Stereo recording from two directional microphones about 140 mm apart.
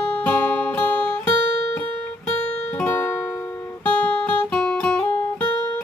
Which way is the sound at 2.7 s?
15° left (ahead or behind).